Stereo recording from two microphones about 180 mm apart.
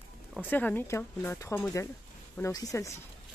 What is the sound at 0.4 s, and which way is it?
Speech, 10° left (ahead or behind).